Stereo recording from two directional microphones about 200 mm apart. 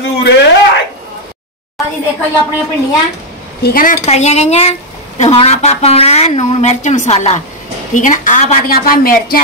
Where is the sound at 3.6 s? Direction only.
45° left (ahead or behind).